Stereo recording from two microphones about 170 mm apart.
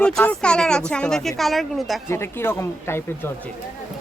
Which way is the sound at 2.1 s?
15° left (ahead or behind).